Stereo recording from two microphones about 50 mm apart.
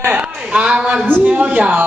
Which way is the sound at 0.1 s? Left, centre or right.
Right.